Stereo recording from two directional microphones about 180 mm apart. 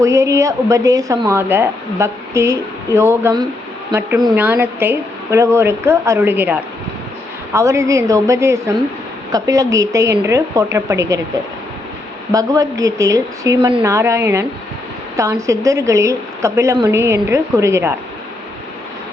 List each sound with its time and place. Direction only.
0.0 s a woman's voice: 15° right (ahead or behind)
12.3 s a woman's voice: 20° right (ahead or behind)